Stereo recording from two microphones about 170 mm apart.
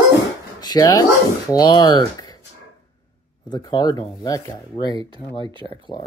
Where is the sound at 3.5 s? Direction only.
25° left (ahead or behind).